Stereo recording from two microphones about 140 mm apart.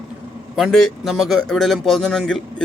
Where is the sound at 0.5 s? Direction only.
Centre (ahead or behind).